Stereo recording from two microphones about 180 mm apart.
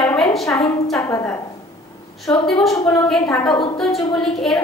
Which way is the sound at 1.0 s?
15° left (ahead or behind).